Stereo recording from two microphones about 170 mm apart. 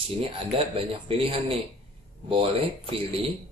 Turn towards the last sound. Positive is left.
turn(degrees=-30)  # may be behind; listen again after turning